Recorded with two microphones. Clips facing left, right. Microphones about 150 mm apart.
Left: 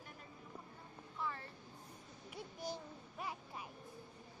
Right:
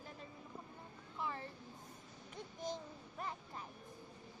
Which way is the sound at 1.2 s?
20° right (ahead or behind).